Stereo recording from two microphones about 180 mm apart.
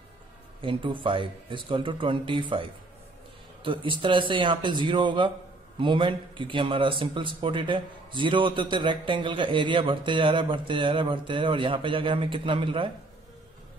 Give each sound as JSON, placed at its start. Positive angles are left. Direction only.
{"t": 0.6, "sound": "a man's voice", "side_deg": -30}